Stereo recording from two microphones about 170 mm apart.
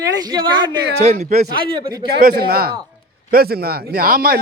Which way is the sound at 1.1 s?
40° right (ahead or behind).